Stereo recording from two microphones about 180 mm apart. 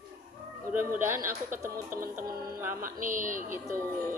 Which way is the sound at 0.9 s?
15° right (ahead or behind).